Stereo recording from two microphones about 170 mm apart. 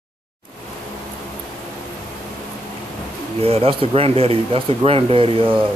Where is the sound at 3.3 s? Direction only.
35° right (ahead or behind).